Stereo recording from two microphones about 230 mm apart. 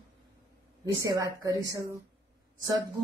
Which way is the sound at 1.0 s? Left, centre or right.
Centre.